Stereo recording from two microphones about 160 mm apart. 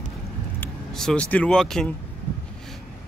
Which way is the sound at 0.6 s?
5° left (ahead or behind).